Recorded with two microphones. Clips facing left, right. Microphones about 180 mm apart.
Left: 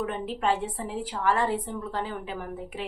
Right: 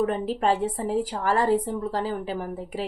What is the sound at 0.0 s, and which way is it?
A woman's voice, 40° right (ahead or behind).